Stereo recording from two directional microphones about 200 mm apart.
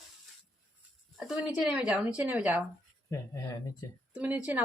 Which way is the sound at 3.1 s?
15° left (ahead or behind).